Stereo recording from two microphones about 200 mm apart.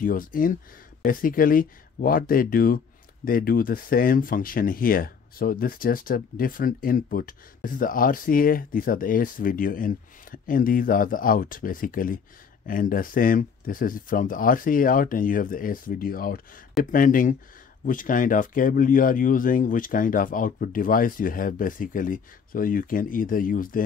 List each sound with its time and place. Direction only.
0.0 s speech: 45° left (ahead or behind)